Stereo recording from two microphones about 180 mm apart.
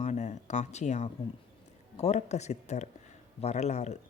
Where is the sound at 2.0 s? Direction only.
40° left (ahead or behind).